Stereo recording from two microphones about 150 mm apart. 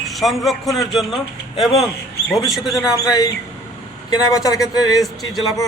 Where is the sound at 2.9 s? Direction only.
25° left (ahead or behind).